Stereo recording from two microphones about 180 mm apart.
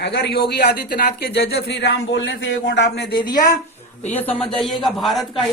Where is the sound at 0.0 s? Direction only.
65° left (ahead or behind).